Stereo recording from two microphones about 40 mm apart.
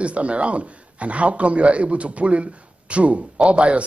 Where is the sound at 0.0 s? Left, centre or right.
Right.